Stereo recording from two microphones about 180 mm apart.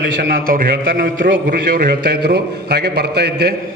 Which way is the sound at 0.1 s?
60° right (ahead or behind).